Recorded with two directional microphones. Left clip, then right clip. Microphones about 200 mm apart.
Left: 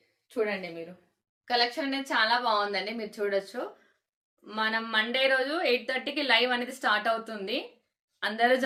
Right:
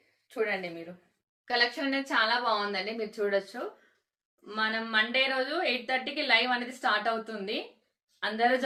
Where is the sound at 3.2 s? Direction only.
55° left (ahead or behind).